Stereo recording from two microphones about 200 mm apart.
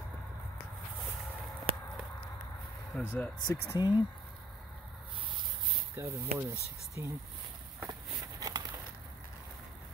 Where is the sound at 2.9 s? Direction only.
5° left (ahead or behind).